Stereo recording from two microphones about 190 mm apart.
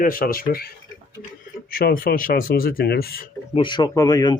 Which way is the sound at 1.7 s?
50° left (ahead or behind).